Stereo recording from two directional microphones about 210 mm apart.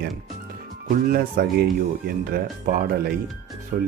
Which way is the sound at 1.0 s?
45° right (ahead or behind).